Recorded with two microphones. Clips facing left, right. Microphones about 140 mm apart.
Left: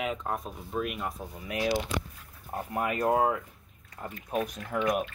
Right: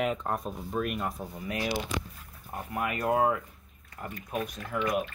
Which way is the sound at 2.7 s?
30° left (ahead or behind).